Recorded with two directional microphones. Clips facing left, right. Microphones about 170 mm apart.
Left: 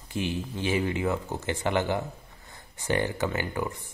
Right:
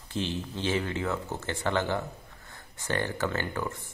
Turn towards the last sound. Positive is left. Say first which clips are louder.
# left 2 dB
turn(degrees=15)  # may be behind; listen again after turning